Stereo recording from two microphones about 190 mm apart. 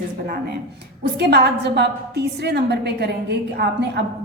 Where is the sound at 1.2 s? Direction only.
60° right (ahead or behind).